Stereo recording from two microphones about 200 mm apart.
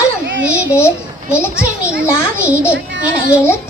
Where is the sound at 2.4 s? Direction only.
5° right (ahead or behind).